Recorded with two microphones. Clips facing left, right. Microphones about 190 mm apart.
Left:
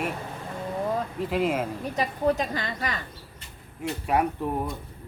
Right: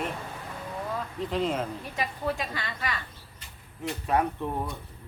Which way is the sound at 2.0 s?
40° left (ahead or behind).